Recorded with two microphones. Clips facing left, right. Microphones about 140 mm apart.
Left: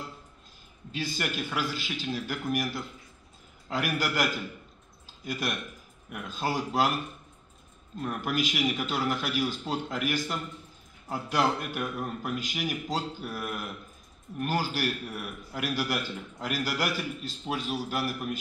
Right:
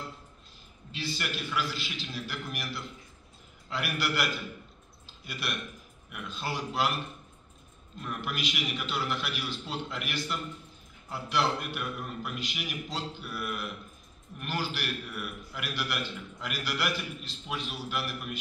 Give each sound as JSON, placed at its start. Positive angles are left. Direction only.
{"t": 0.9, "sound": "a man's voice", "side_deg": 45}
{"t": 8.0, "sound": "a man's voice", "side_deg": 45}